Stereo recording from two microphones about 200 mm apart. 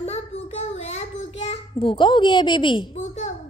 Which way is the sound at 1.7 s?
25° left (ahead or behind).